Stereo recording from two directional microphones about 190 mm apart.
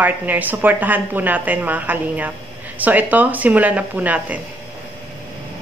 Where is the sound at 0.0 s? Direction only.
10° right (ahead or behind).